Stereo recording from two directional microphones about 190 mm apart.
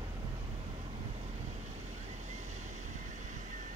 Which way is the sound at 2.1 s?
40° right (ahead or behind).